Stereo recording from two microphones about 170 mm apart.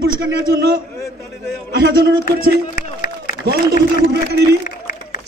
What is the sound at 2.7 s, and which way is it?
Run, 50° left (ahead or behind).